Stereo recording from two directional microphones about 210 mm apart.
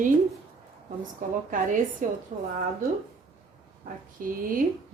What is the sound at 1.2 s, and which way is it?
Speech, 40° right (ahead or behind).